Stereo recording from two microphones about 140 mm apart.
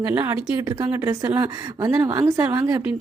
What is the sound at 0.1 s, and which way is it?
Speech, 15° right (ahead or behind).